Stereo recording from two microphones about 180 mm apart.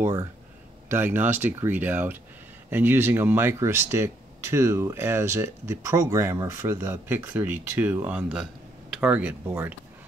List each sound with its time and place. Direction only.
0.0 s speech: 15° right (ahead or behind)